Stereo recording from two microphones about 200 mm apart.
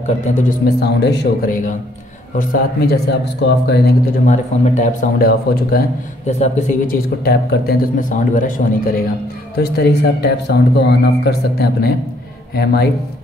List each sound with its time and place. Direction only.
0.2 s speech: 35° left (ahead or behind)
0.7 s speech: 55° left (ahead or behind)
4.3 s a man's voice: 35° left (ahead or behind)
6.2 s speech: 35° left (ahead or behind)
7.2 s a man's voice: 45° left (ahead or behind)
9.6 s a man's voice: 55° left (ahead or behind)